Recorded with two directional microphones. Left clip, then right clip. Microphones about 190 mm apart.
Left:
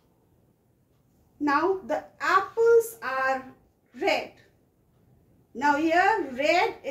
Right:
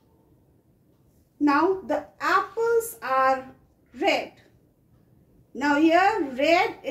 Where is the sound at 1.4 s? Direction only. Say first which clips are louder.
Right 3 dB; 20° right (ahead or behind).